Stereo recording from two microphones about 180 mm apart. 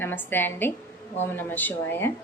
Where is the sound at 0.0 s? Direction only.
10° left (ahead or behind).